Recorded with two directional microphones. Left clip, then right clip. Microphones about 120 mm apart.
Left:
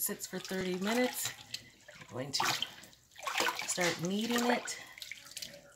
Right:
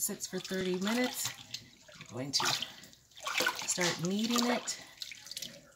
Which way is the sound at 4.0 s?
25° left (ahead or behind).